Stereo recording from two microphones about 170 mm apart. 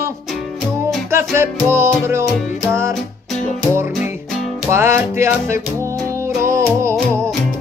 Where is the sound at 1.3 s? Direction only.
15° right (ahead or behind).